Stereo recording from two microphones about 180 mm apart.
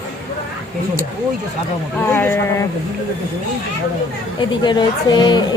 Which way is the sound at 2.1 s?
10° left (ahead or behind).